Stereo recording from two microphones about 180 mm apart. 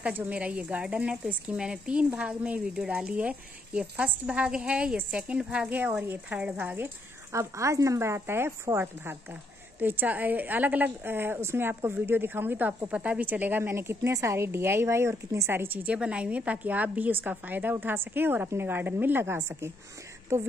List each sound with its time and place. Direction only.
0.0 s a woman's voice: 10° right (ahead or behind)